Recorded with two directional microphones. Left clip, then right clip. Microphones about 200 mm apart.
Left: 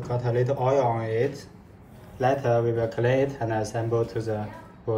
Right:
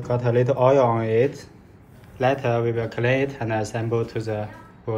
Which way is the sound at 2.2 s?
15° left (ahead or behind).